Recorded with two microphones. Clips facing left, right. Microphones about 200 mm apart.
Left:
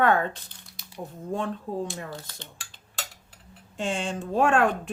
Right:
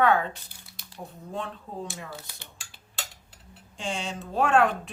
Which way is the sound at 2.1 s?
10° right (ahead or behind).